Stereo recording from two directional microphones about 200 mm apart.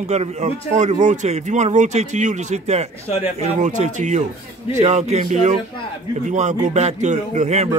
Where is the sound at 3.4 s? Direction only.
35° right (ahead or behind).